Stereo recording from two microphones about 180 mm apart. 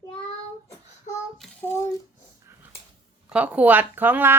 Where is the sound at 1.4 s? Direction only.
10° left (ahead or behind).